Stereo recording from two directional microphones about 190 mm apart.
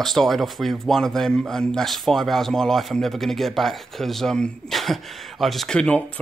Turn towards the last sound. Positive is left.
turn(degrees=5)  # may be behind; listen again after turning